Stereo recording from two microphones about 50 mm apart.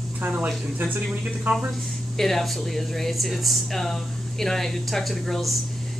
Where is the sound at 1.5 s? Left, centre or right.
Right.